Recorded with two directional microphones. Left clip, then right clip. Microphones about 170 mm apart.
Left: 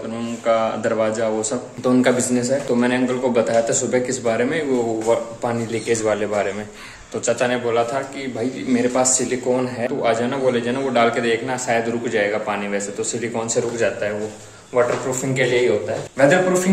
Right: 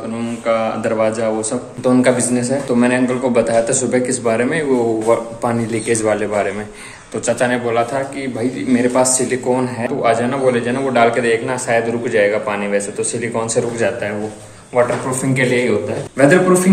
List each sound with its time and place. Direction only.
0.5 s a man's voice: 20° left (ahead or behind)